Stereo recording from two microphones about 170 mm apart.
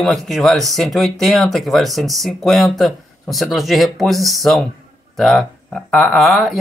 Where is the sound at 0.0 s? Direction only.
Centre (ahead or behind).